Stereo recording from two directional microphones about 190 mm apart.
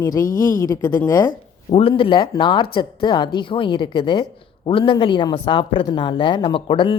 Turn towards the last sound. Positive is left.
turn(degrees=25)  # may be behind; listen again after turning